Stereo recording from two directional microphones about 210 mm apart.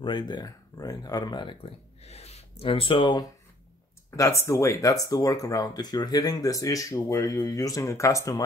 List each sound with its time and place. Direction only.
0.0 s speech: 20° left (ahead or behind)